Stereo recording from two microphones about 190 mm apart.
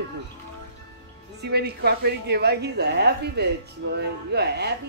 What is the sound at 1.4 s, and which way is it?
A woman's voice, 60° right (ahead or behind).